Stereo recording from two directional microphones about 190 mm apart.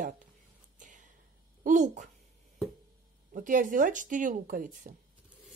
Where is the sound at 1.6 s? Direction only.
40° right (ahead or behind).